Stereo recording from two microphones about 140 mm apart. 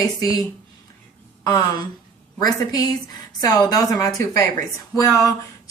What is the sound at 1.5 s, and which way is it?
Speech, 30° left (ahead or behind).